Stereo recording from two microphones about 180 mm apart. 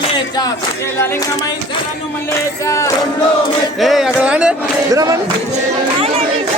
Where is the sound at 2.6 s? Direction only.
15° left (ahead or behind).